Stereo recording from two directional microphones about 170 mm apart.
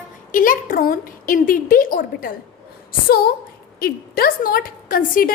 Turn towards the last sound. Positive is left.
turn(degrees=55)  # may be behind; listen again after turning